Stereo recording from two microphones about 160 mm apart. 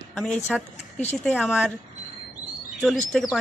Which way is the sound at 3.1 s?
5° left (ahead or behind).